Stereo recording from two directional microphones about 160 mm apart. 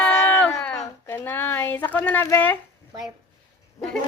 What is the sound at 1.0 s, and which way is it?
Snicker, 15° left (ahead or behind).